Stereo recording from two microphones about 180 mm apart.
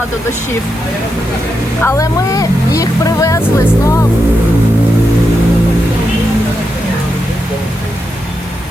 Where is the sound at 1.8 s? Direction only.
15° left (ahead or behind).